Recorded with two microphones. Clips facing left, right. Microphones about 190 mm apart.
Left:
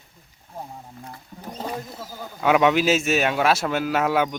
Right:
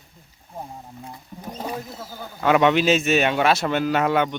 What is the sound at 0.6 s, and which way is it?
Wild animals, 10° right (ahead or behind).